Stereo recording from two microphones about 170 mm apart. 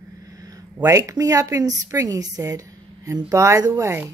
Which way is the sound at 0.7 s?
20° right (ahead or behind).